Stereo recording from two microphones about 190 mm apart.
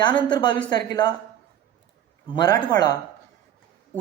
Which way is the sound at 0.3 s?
25° left (ahead or behind).